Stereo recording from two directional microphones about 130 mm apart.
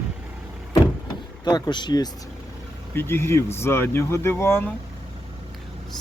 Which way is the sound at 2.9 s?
20° left (ahead or behind).